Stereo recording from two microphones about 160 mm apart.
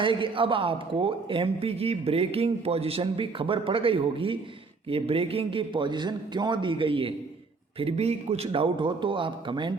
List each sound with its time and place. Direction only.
0.0 s speech: 30° right (ahead or behind)